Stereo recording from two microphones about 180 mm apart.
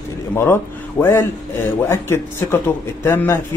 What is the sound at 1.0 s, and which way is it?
A man's voice, 15° left (ahead or behind).